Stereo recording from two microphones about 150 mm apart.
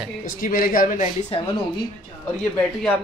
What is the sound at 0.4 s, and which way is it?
Speech, 70° left (ahead or behind).